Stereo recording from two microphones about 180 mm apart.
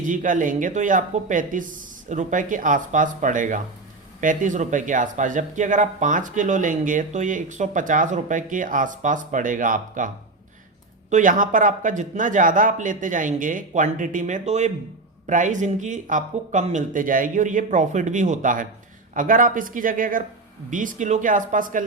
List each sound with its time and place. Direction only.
0.0 s speech: 45° right (ahead or behind)
11.1 s speech: 45° right (ahead or behind)